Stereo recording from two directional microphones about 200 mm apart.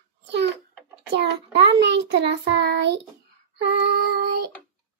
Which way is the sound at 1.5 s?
60° right (ahead or behind).